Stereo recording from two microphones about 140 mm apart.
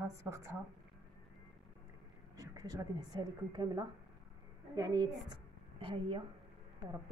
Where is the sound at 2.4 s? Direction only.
25° right (ahead or behind).